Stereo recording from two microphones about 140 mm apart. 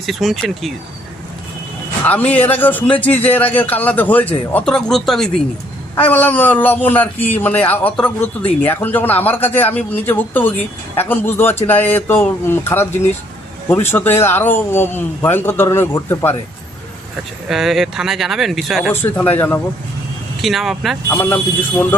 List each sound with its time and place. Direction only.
0.0 s speech: centre (ahead or behind)
2.0 s a man's voice: 10° left (ahead or behind)
17.5 s speech: centre (ahead or behind)
18.9 s a man's voice: 15° left (ahead or behind)
20.4 s speech: centre (ahead or behind)
21.1 s a man's voice: 15° left (ahead or behind)